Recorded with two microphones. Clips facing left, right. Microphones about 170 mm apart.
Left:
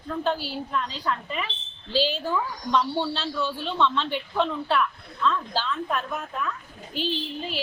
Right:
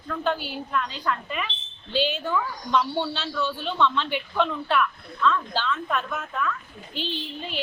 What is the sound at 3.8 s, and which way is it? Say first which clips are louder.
Speech: right 1 dB; 30° left (ahead or behind).